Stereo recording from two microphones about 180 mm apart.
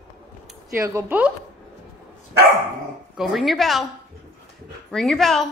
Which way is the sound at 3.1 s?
Centre (ahead or behind).